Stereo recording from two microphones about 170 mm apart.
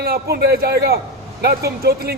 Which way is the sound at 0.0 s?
65° right (ahead or behind).